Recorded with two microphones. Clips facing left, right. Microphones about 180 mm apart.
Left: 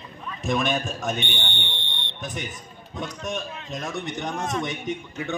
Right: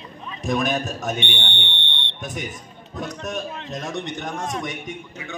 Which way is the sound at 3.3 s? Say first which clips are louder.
Right 2 dB; centre (ahead or behind).